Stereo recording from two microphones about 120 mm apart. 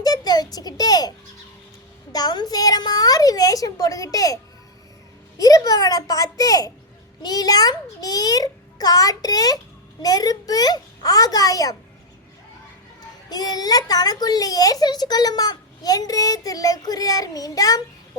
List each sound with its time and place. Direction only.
0.0 s a sound: 35° left (ahead or behind)
2.1 s a child's voice: 35° left (ahead or behind)
5.4 s a child's voice: 30° left (ahead or behind)
13.0 s a child's voice: 35° left (ahead or behind)